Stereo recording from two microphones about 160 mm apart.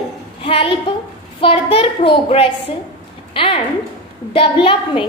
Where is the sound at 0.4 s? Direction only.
35° left (ahead or behind).